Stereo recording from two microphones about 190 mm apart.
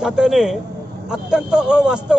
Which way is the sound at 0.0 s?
5° right (ahead or behind).